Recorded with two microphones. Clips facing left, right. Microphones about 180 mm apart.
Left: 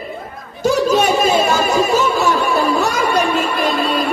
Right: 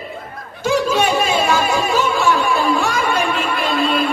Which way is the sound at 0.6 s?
40° left (ahead or behind).